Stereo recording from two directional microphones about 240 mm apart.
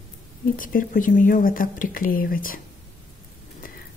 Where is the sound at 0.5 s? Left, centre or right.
Left.